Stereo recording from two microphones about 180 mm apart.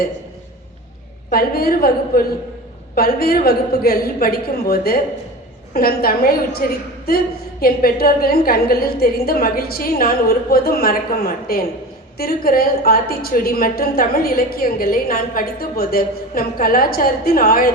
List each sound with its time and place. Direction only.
1.3 s a woman's voice: 55° left (ahead or behind)